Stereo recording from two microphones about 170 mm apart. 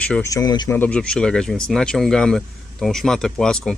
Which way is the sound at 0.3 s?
20° left (ahead or behind).